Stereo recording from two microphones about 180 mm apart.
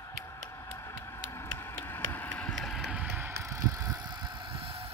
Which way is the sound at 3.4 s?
15° right (ahead or behind).